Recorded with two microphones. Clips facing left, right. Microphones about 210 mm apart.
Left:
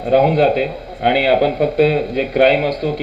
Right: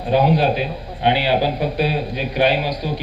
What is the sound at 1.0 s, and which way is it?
A man's voice, 60° left (ahead or behind).